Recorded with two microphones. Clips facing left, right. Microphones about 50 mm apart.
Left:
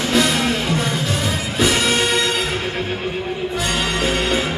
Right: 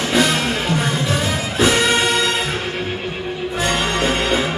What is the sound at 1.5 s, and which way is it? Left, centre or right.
Music, centre.